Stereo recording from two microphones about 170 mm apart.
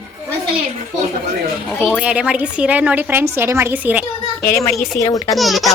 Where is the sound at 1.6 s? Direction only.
Centre (ahead or behind).